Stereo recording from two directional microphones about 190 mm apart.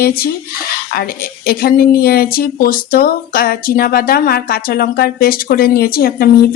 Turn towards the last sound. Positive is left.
turn(degrees=55)  # may be behind; listen again after turning